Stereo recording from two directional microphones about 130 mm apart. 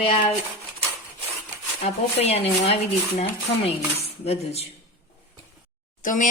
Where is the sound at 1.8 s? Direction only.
50° left (ahead or behind).